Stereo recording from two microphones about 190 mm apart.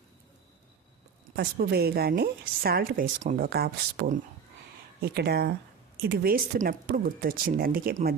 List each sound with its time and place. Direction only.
1.4 s a woman's voice: 55° right (ahead or behind)